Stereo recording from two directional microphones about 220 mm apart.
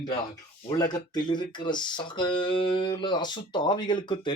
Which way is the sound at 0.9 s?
20° left (ahead or behind).